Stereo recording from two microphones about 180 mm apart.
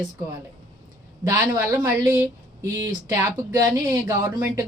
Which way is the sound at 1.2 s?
20° right (ahead or behind).